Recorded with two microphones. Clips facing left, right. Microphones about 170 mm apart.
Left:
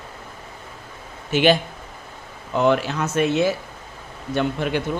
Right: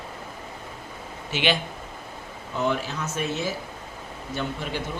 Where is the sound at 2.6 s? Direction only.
75° left (ahead or behind).